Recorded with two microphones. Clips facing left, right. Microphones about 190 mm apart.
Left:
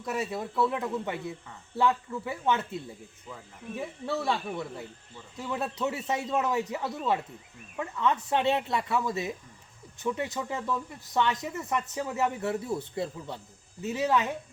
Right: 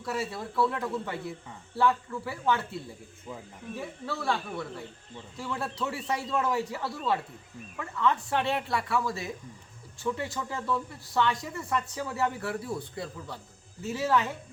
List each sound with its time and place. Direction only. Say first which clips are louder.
0.0 s speech: left 1 dB; 20° left (ahead or behind)
3.8 s speech: left 4 dB; 20° left (ahead or behind)